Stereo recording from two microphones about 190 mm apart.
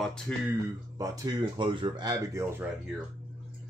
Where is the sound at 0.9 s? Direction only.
20° right (ahead or behind).